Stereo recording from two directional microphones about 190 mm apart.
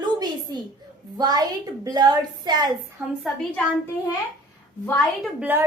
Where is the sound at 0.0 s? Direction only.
20° right (ahead or behind).